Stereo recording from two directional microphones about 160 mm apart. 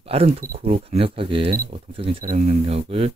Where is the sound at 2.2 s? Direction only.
50° right (ahead or behind).